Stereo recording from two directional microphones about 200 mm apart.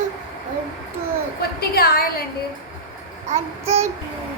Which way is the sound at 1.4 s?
50° left (ahead or behind).